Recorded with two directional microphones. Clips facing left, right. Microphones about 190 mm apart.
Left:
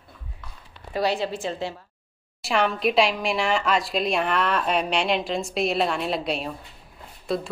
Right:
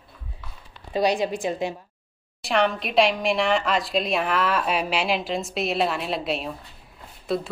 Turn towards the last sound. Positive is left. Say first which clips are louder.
# right 1 dB
turn(degrees=0)  # may be behind; listen again after turning